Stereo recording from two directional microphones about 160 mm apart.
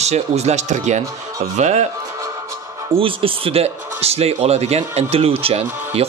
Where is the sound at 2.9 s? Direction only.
35° right (ahead or behind).